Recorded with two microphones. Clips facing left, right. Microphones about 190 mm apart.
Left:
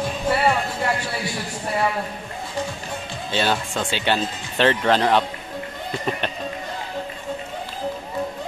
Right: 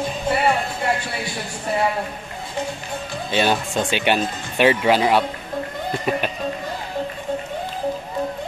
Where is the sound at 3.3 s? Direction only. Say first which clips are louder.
Right 3 dB; 15° right (ahead or behind).